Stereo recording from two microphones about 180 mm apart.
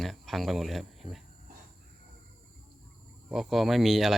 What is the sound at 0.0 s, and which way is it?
Speech, centre (ahead or behind).